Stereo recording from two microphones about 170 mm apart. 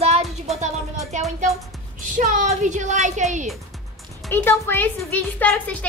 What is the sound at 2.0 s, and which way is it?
Speech, 50° right (ahead or behind).